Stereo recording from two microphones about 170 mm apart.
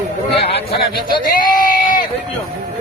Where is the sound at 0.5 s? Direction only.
30° left (ahead or behind).